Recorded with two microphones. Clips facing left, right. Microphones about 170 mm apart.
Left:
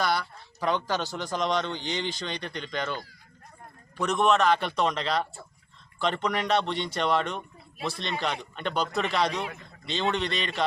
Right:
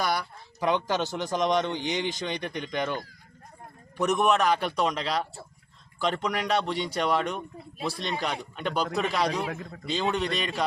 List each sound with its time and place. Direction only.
0.0 s a man's voice: 15° right (ahead or behind)
9.5 s a man's voice: 90° right
9.8 s a man's voice: 10° right (ahead or behind)